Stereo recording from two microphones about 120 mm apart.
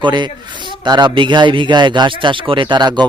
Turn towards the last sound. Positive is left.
turn(degrees=-40)  # may be behind; listen again after turning